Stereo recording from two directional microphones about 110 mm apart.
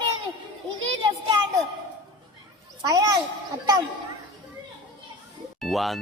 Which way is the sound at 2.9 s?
35° right (ahead or behind).